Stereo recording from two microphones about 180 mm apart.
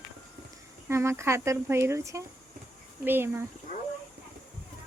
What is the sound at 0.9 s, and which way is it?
Speech, 15° right (ahead or behind).